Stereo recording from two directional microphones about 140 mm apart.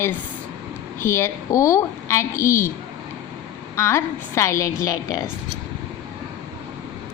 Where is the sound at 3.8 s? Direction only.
20° left (ahead or behind).